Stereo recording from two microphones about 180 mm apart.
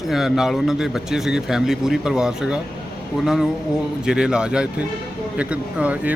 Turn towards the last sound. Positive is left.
turn(degrees=-5)  # may be behind; listen again after turning